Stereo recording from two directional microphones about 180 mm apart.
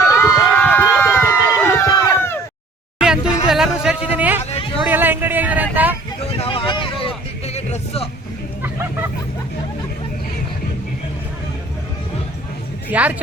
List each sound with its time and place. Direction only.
0.1 s a sound: 10° left (ahead or behind)
3.0 s speech: 5° right (ahead or behind)
6.3 s vehicle: 30° left (ahead or behind)
8.6 s hubbub: 10° right (ahead or behind)
12.9 s speech: 10° right (ahead or behind)